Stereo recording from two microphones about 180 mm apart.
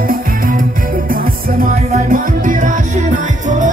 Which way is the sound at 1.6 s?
50° right (ahead or behind).